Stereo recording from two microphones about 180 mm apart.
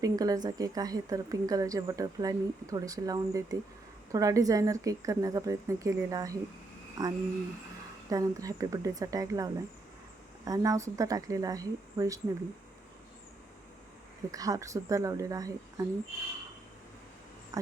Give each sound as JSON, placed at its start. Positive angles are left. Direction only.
{"t": 0.0, "sound": "speech", "side_deg": -20}
{"t": 14.3, "sound": "speech", "side_deg": -20}
{"t": 17.5, "sound": "insect", "side_deg": -20}